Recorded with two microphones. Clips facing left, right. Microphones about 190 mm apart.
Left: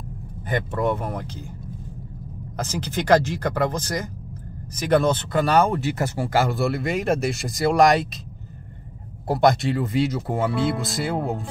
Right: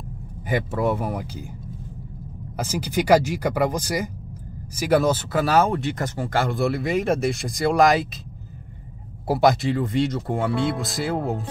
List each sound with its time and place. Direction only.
0.5 s speech: 5° right (ahead or behind)
2.5 s speech: 10° right (ahead or behind)
9.3 s speech: 5° right (ahead or behind)